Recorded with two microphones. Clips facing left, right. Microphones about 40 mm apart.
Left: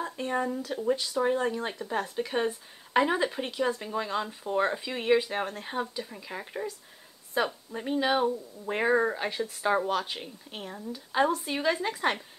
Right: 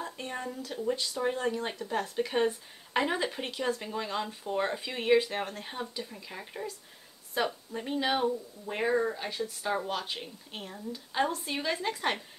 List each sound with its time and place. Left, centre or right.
0.2 s speech: centre
8.6 s speech: centre
9.8 s speech: centre